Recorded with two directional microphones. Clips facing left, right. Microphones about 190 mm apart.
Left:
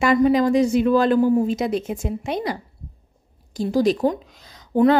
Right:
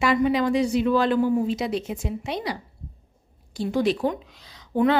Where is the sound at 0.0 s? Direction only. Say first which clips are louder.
Left 4 dB; 45° left (ahead or behind).